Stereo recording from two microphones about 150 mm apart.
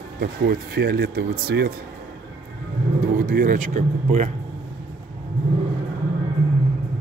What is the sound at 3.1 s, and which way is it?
Speech, 70° right (ahead or behind).